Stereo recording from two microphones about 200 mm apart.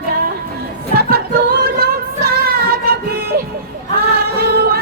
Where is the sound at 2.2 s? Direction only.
50° right (ahead or behind).